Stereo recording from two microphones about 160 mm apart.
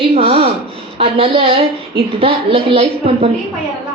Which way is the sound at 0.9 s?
35° right (ahead or behind).